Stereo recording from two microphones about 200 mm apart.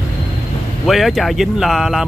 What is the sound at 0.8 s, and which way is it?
Speech, centre (ahead or behind).